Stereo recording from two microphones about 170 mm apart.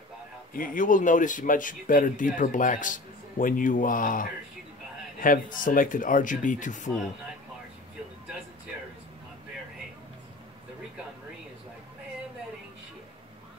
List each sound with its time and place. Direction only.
0.5 s speech: 55° left (ahead or behind)